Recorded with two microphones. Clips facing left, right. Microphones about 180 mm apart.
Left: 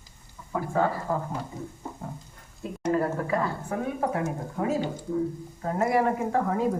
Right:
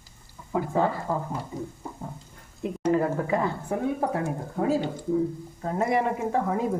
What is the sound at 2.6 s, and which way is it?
Speech, 20° right (ahead or behind).